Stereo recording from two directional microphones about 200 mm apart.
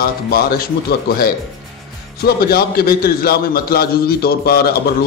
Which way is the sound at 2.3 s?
50° left (ahead or behind).